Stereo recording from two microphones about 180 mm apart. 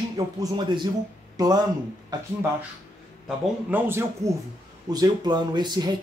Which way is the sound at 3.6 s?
10° right (ahead or behind).